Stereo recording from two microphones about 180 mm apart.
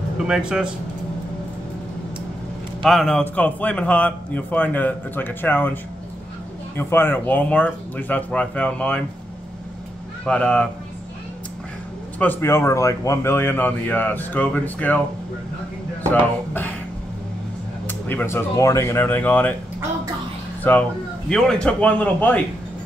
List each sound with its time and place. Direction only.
0.3 s a man's voice: 5° right (ahead or behind)
2.8 s a man's voice: centre (ahead or behind)
6.8 s a man's voice: 10° left (ahead or behind)
10.2 s a man's voice: 5° left (ahead or behind)
12.2 s a man's voice: 10° left (ahead or behind)
16.1 s a man's voice: 10° left (ahead or behind)
17.8 s a man's voice: 10° left (ahead or behind)
20.7 s a man's voice: 10° left (ahead or behind)